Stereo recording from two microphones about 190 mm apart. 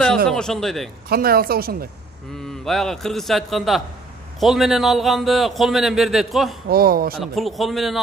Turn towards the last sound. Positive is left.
turn(degrees=0)  # may be behind; listen again after turning